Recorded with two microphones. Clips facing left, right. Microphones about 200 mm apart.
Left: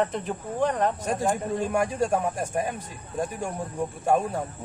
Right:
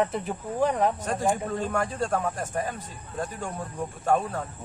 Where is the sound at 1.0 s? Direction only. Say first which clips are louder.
Even; 10° left (ahead or behind).